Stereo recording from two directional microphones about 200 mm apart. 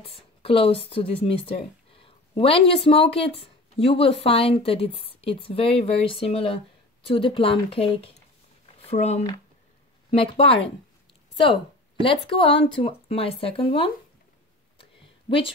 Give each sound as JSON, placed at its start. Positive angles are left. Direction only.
{"t": 0.0, "sound": "a woman's voice", "side_deg": 30}
{"t": 12.0, "sound": "a woman's voice", "side_deg": 25}
{"t": 14.8, "sound": "a sound", "side_deg": 25}